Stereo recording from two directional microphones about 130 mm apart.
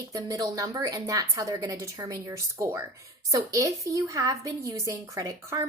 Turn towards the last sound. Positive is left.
turn(degrees=-25)  # may be behind; listen again after turning